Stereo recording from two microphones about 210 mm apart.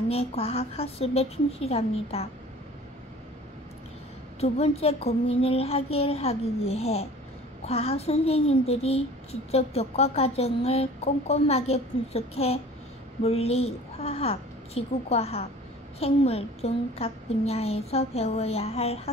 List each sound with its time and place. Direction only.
0.1 s a child's voice: 30° left (ahead or behind)
4.4 s a child's voice: 30° left (ahead or behind)